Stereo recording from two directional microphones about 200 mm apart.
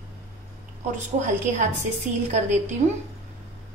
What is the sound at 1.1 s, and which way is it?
Speech, 35° right (ahead or behind).